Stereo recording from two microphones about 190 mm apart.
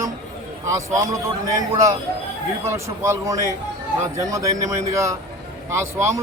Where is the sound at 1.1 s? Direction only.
15° right (ahead or behind).